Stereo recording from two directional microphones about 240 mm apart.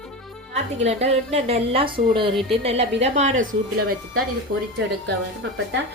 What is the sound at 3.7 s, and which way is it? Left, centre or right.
Speech, right.